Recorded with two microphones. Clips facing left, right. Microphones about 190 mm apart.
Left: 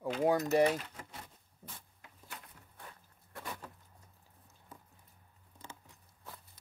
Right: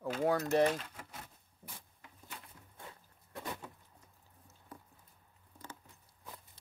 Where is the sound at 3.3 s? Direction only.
20° right (ahead or behind).